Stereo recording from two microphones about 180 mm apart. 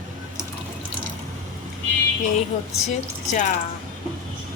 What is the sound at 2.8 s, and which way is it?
Speech, 45° left (ahead or behind).